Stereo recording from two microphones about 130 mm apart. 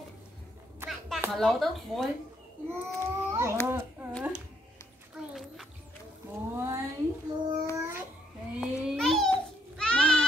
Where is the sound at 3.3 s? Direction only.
20° right (ahead or behind).